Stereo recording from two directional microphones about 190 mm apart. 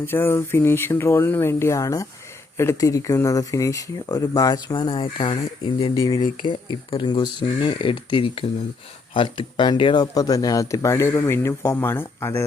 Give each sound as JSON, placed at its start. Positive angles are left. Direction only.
{"t": 0.0, "sound": "speech", "side_deg": 10}